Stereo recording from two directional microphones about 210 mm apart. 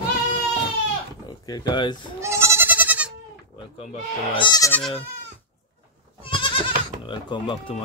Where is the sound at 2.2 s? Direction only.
15° right (ahead or behind).